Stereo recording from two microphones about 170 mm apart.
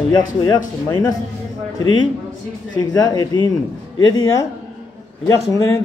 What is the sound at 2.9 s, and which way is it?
A man's voice, 20° left (ahead or behind).